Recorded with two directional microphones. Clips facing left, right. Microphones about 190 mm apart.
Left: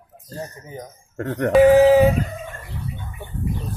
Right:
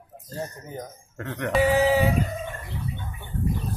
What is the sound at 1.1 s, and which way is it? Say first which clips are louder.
Speech: left 9 dB; 40° left (ahead or behind).